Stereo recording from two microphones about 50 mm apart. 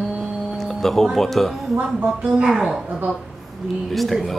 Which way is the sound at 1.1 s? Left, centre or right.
Centre.